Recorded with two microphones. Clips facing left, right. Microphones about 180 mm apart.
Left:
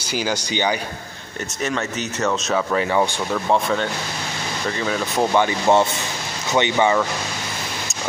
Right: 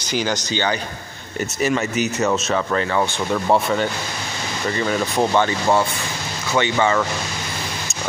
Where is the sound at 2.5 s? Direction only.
10° left (ahead or behind).